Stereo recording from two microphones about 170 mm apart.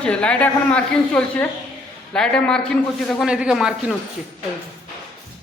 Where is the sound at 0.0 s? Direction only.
5° left (ahead or behind).